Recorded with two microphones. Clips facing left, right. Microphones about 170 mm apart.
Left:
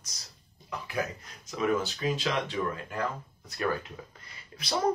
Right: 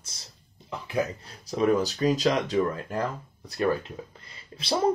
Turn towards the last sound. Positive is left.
turn(degrees=-30)  # may be behind; listen again after turning